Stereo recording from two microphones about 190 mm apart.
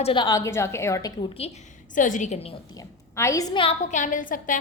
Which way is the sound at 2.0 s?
40° left (ahead or behind).